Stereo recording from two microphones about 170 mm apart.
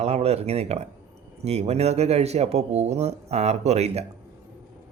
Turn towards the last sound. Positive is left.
turn(degrees=-40)  # may be behind; listen again after turning